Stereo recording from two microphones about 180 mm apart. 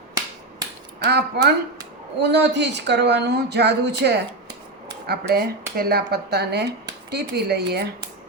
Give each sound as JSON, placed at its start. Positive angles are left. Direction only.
{"t": 0.9, "sound": "speech", "side_deg": -65}
{"t": 5.0, "sound": "speech", "side_deg": -60}